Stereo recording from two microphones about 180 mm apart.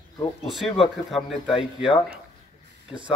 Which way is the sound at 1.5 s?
30° left (ahead or behind).